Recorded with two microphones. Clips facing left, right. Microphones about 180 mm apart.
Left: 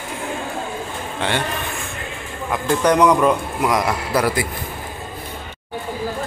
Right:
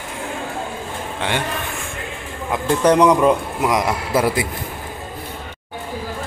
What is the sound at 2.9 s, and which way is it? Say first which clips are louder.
A man's voice: right 2 dB; 30° right (ahead or behind).